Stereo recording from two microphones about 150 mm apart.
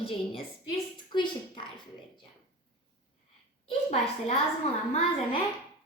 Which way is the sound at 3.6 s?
45° left (ahead or behind).